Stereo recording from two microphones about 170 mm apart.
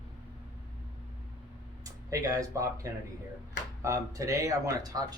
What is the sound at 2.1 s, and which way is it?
Speech, 20° right (ahead or behind).